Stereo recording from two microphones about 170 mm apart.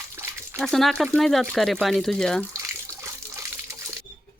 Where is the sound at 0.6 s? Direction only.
Centre (ahead or behind).